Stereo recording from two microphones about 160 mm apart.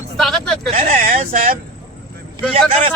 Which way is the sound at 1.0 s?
55° right (ahead or behind).